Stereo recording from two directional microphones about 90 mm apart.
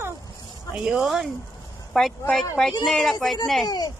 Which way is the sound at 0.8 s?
10° right (ahead or behind).